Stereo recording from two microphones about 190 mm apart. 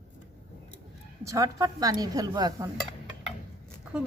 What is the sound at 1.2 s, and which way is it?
Speech, 15° right (ahead or behind).